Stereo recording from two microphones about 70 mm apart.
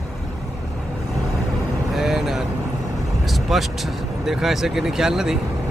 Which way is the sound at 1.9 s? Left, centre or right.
Centre.